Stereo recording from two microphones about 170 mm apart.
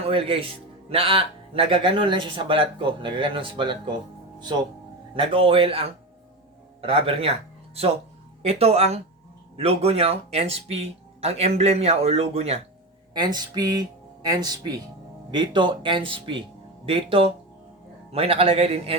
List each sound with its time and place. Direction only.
0.0 s speech: 35° right (ahead or behind)
5.1 s speech: 30° right (ahead or behind)
13.1 s speech: 25° right (ahead or behind)